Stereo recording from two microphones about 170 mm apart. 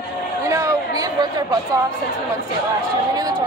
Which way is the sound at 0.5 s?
20° right (ahead or behind).